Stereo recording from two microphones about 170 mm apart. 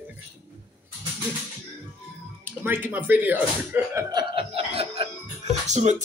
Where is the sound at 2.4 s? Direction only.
10° right (ahead or behind).